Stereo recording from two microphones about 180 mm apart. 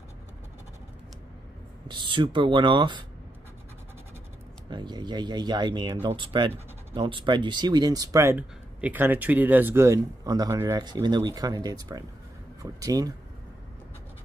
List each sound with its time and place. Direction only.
1.9 s speech: 25° right (ahead or behind)
4.6 s speech: 25° right (ahead or behind)